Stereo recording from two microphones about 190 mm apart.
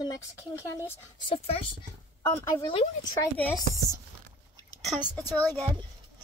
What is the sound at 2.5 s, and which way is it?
Speech, 20° left (ahead or behind).